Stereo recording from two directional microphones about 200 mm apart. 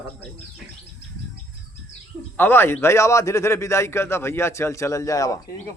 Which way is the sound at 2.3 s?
10° left (ahead or behind).